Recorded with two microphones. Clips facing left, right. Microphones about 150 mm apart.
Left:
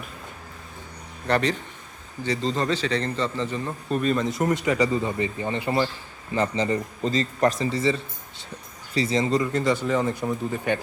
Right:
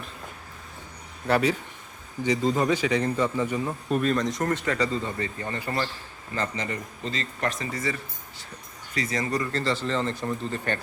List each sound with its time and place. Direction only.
1.3 s a man's voice: 5° right (ahead or behind); by 5.9 s 20° left (ahead or behind)
6.6 s a man's voice: 35° left (ahead or behind); by 10.8 s 10° left (ahead or behind)